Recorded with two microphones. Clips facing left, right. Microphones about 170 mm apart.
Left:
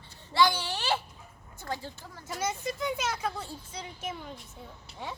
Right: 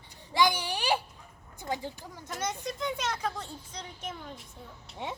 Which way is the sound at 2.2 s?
5° left (ahead or behind).